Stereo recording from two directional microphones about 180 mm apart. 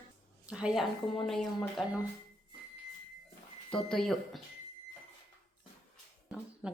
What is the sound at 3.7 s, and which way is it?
Speech, centre (ahead or behind).